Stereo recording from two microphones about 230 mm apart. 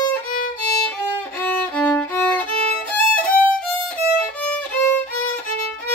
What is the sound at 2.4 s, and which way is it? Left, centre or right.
Violin, right.